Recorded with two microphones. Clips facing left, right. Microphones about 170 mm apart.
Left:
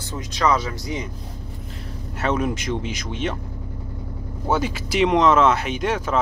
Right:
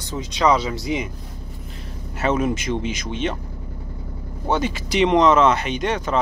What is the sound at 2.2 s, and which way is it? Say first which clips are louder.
Speech: right 2 dB; 5° right (ahead or behind).